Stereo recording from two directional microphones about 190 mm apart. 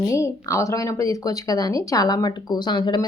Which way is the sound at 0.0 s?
15° left (ahead or behind).